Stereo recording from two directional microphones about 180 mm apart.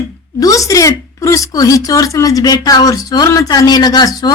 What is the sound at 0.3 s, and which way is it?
A woman's voice, 20° left (ahead or behind).